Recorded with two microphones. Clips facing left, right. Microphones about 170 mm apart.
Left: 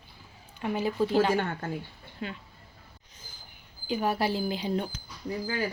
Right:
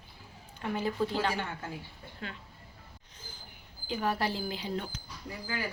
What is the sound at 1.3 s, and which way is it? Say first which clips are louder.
Speech: left 7 dB; 55° left (ahead or behind).